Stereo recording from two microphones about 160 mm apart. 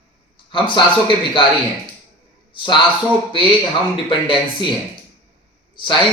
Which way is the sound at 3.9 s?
30° left (ahead or behind).